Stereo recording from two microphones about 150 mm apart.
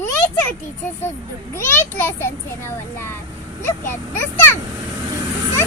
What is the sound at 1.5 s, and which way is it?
A child's voice, 15° left (ahead or behind).